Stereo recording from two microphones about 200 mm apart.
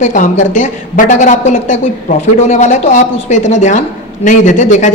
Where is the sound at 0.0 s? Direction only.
35° left (ahead or behind).